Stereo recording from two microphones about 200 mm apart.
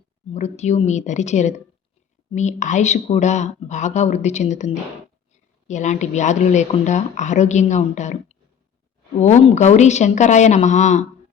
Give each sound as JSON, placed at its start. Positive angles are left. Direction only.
{"t": 0.3, "sound": "speech", "side_deg": 35}